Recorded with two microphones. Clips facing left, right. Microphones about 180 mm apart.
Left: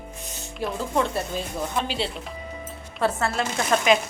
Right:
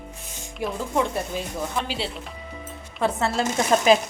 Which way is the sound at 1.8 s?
5° right (ahead or behind).